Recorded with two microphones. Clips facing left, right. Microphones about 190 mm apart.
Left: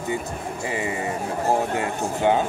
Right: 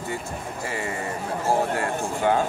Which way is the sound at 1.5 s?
20° left (ahead or behind).